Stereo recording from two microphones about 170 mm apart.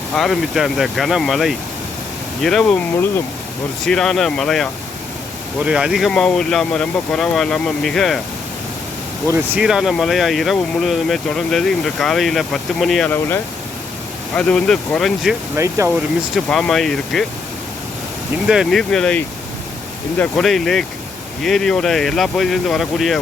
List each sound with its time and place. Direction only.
0.1 s speech: centre (ahead or behind)
3.8 s speech: 5° left (ahead or behind)
9.6 s speech: 5° right (ahead or behind)
15.5 s speech: 15° right (ahead or behind)
16.3 s speech: 5° left (ahead or behind)
18.4 s speech: 5° right (ahead or behind)